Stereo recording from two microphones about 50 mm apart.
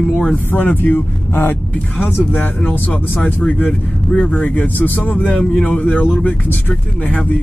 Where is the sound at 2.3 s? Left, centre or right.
Left.